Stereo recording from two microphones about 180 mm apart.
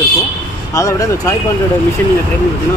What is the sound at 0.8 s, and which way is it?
Speech, 20° left (ahead or behind).